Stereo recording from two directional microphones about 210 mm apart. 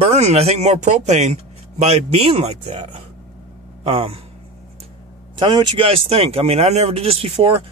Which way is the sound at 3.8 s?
25° right (ahead or behind).